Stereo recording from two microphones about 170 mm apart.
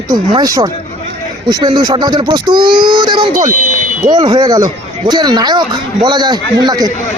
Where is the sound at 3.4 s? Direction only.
50° right (ahead or behind).